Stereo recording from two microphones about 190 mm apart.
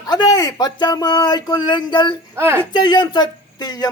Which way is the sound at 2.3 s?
15° right (ahead or behind).